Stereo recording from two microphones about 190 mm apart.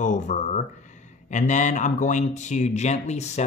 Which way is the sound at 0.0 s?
40° left (ahead or behind).